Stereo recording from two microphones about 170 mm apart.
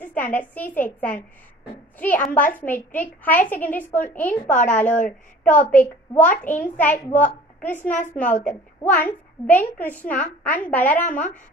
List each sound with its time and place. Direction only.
0.0 s a woman's voice: 10° left (ahead or behind)
4.6 s a woman's voice: 45° left (ahead or behind)
5.7 s a child's voice: 10° left (ahead or behind)